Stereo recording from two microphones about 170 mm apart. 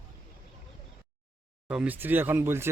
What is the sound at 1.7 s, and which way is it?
Speech, 10° right (ahead or behind).